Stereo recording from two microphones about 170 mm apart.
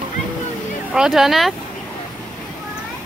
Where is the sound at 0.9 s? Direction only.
Centre (ahead or behind).